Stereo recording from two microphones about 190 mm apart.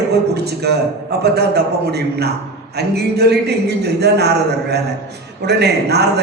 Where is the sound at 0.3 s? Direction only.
60° right (ahead or behind).